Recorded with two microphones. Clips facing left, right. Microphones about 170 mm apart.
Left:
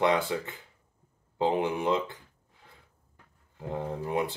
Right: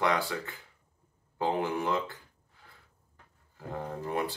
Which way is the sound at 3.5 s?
20° left (ahead or behind).